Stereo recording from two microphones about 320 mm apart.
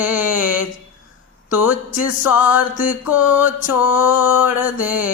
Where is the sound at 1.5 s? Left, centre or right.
Centre.